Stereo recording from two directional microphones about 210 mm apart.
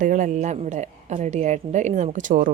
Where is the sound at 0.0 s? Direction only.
35° right (ahead or behind).